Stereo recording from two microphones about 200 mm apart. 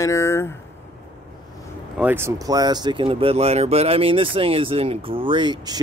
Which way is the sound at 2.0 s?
10° right (ahead or behind).